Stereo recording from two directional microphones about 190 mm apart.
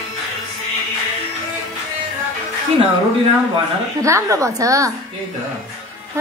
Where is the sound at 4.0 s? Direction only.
15° right (ahead or behind).